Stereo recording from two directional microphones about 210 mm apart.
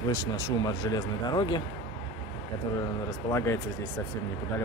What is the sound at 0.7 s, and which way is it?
Speech, 20° left (ahead or behind).